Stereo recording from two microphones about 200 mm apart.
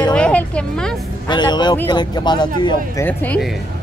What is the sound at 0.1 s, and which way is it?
Music, 5° left (ahead or behind).